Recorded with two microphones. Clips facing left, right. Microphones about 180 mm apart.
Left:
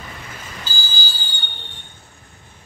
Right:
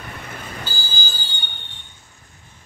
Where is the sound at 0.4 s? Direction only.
55° right (ahead or behind).